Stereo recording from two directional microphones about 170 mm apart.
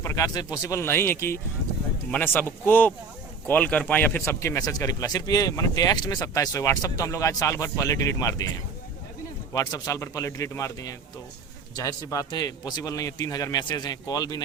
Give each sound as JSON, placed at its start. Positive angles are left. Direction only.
{"t": 0.0, "sound": "speech", "side_deg": 20}
{"t": 9.5, "sound": "speech", "side_deg": 20}